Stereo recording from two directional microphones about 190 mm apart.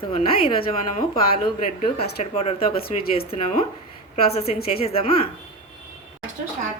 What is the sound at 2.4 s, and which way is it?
A woman's voice, 30° left (ahead or behind).